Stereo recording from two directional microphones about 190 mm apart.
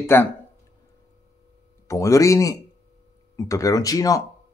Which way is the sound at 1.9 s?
15° left (ahead or behind).